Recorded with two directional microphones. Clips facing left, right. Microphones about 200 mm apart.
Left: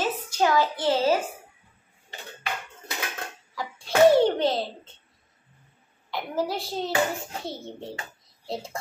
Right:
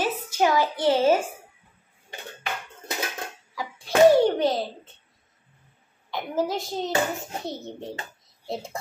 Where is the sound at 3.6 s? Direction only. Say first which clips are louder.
Right 1 dB; 15° right (ahead or behind).